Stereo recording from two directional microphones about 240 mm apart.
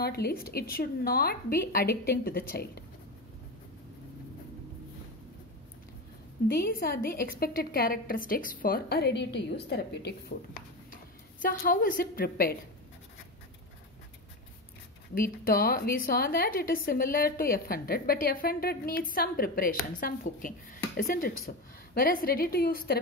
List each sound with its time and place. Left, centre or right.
0.0 s a woman's voice: left
6.4 s a woman's voice: left
15.1 s a woman's voice: left